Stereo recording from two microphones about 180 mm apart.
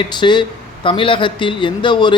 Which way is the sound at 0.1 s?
25° left (ahead or behind).